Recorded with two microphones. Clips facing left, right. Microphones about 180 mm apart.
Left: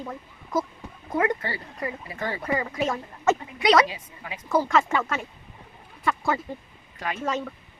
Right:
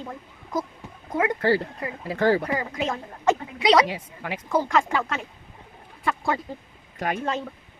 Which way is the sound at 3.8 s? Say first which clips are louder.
Right 4 dB; 70° right (ahead or behind).